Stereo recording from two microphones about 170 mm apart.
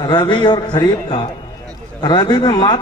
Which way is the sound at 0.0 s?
25° left (ahead or behind).